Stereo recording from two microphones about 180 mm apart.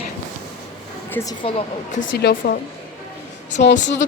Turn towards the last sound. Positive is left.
turn(degrees=75)  # may be behind; listen again after turning